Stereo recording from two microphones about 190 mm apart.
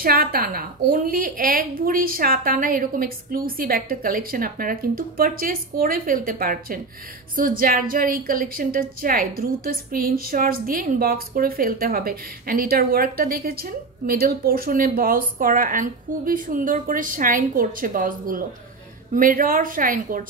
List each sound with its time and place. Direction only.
0.0 s a woman's voice: 50° right (ahead or behind)